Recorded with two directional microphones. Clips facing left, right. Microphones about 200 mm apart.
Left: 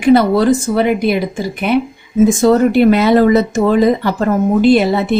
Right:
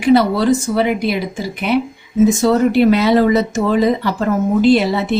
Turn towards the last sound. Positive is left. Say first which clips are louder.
# left 2 dB
turn(degrees=50)  # may be behind; listen again after turning